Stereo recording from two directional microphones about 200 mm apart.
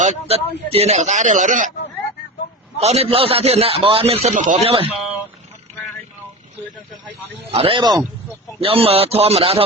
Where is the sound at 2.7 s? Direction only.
30° right (ahead or behind).